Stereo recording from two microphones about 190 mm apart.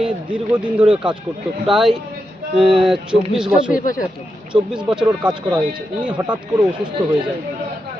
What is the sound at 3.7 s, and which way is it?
Speech, 45° left (ahead or behind).